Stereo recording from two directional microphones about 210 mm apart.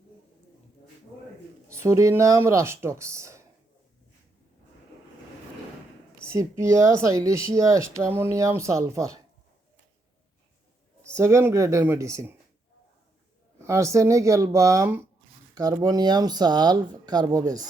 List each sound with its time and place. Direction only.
1.7 s speech: 15° right (ahead or behind)
6.2 s speech: 15° right (ahead or behind)
11.1 s speech: 15° right (ahead or behind)
13.6 s speech: 15° right (ahead or behind)